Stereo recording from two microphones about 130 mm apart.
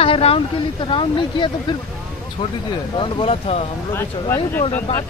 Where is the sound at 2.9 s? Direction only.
45° left (ahead or behind).